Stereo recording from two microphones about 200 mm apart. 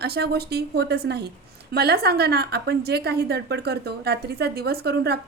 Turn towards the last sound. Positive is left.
turn(degrees=-55)  # may be behind; listen again after turning